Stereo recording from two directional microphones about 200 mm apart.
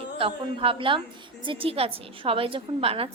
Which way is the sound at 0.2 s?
25° right (ahead or behind).